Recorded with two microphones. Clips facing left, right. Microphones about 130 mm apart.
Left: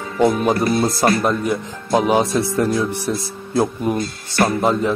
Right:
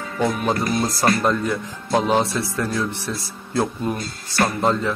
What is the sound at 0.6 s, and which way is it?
Speech, 30° left (ahead or behind).